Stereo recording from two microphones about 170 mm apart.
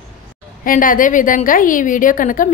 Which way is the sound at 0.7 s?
50° left (ahead or behind).